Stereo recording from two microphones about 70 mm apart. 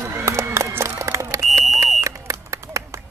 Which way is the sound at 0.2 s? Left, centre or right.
Right.